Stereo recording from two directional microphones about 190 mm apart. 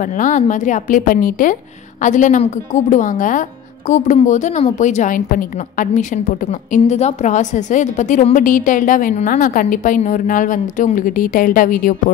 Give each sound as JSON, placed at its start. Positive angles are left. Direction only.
{"t": 0.0, "sound": "a woman's voice", "side_deg": 40}